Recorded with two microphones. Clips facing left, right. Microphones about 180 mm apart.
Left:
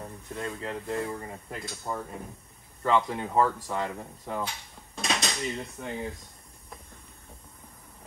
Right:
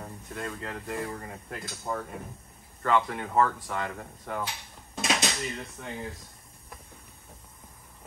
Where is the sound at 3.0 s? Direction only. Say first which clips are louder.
Left 1 dB; 10° left (ahead or behind).